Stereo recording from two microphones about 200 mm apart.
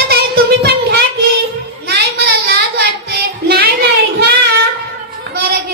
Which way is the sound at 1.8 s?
50° right (ahead or behind).